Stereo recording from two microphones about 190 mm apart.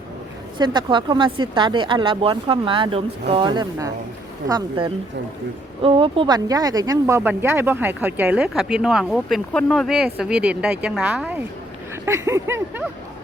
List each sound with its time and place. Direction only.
0.6 s speech: 25° right (ahead or behind)